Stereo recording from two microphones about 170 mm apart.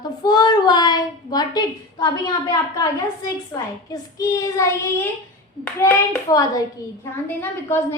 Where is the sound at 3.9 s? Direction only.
20° left (ahead or behind).